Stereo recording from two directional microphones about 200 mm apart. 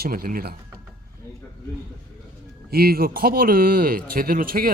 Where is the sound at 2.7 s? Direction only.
50° right (ahead or behind).